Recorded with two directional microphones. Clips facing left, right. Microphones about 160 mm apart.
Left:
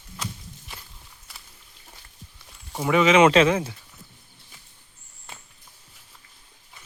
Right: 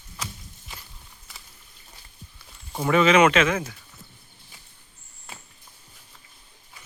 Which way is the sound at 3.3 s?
30° left (ahead or behind).